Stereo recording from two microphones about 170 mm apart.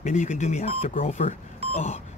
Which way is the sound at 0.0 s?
45° left (ahead or behind).